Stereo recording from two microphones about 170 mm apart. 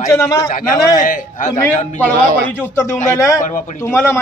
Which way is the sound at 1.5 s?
15° left (ahead or behind).